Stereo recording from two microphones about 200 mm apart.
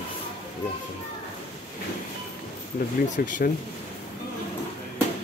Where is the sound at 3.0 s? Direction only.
45° left (ahead or behind).